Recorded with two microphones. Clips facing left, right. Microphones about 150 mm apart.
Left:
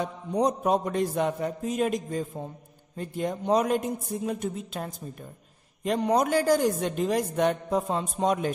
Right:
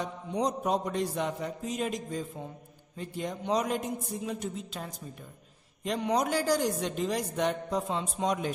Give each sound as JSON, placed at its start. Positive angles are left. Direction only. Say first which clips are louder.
{"t": 0.3, "sound": "a woman's voice", "louder": "left 5 dB", "side_deg": 55}